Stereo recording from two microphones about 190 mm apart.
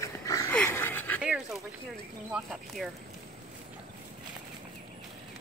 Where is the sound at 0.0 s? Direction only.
15° left (ahead or behind).